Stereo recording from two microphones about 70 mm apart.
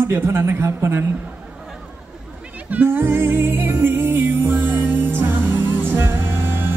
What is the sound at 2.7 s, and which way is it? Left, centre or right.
Music, right.